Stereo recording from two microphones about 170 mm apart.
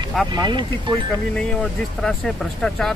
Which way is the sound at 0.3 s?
25° right (ahead or behind).